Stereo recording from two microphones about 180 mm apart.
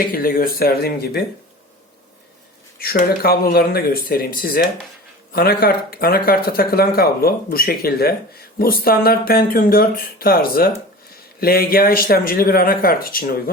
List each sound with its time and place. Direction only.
0.1 s speech: 55° left (ahead or behind)
2.7 s speech: 55° left (ahead or behind)